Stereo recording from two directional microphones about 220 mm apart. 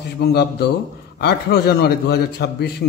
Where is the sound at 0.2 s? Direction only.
45° left (ahead or behind).